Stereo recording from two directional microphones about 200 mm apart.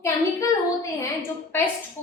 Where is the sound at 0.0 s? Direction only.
15° left (ahead or behind).